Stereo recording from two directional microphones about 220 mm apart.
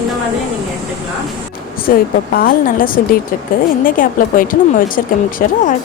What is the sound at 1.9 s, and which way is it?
A woman's voice, 40° left (ahead or behind).